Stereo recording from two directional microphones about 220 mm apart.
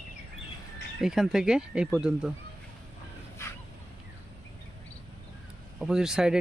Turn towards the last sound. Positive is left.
turn(degrees=-5)  # may be behind; listen again after turning